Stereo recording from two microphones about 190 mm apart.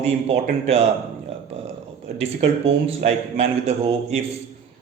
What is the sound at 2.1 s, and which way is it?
A man's voice, 35° right (ahead or behind).